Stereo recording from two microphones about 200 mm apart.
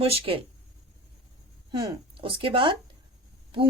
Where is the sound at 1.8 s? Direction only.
25° right (ahead or behind).